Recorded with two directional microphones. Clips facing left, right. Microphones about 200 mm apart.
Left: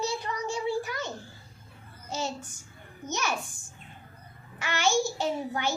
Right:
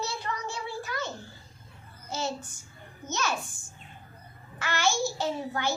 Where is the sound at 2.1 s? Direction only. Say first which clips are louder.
Even; 15° left (ahead or behind).